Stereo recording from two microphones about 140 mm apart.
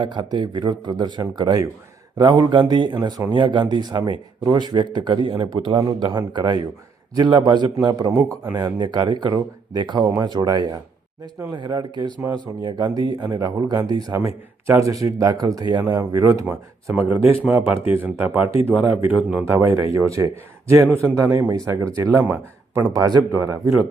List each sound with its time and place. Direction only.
0.0 s a man's voice: 30° right (ahead or behind)
8.1 s speech: 10° right (ahead or behind)
8.5 s a man's voice: 30° right (ahead or behind); by 22.9 s 15° right (ahead or behind)
22.9 s speech: 25° right (ahead or behind)